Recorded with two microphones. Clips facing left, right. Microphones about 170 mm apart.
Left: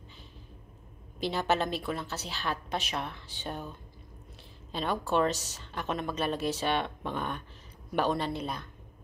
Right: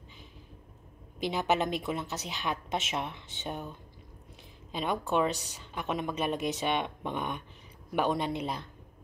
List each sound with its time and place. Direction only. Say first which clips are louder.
1.2 s a woman's voice: even; 15° right (ahead or behind)
4.7 s a woman's voice: even; 15° right (ahead or behind)